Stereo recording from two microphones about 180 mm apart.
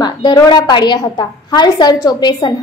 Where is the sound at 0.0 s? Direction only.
25° left (ahead or behind).